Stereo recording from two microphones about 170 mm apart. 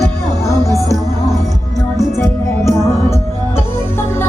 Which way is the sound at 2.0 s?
15° left (ahead or behind).